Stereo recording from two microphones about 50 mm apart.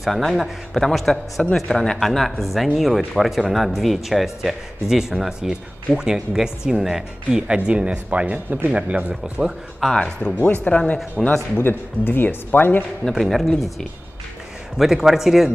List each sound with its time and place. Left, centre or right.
0.0 s speech: centre
1.4 s speech: centre; by 9.5 s right
9.9 s speech: centre
10.4 s speech: left
11.2 s speech: centre
11.5 s speech: left
13.1 s speech: centre